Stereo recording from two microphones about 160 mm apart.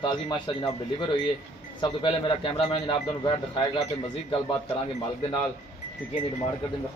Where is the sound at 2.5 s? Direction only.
30° left (ahead or behind).